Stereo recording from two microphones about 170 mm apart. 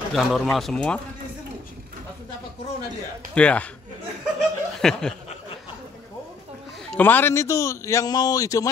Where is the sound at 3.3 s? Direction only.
5° left (ahead or behind).